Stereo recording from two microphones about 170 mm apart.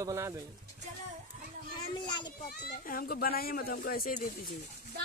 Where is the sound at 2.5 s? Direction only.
60° left (ahead or behind).